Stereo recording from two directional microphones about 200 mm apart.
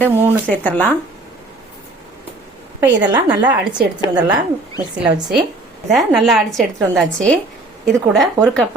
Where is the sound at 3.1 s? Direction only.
20° right (ahead or behind).